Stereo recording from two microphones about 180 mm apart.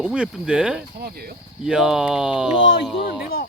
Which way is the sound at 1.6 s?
5° right (ahead or behind).